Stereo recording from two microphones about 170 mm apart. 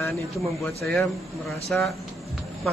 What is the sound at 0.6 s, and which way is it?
Speech, centre (ahead or behind).